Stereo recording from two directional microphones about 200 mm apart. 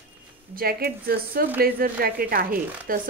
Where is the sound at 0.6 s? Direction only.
50° right (ahead or behind).